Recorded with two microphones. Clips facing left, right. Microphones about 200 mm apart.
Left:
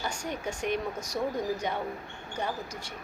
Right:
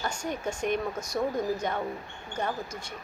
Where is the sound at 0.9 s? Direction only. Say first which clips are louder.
Right 2 dB; 15° left (ahead or behind).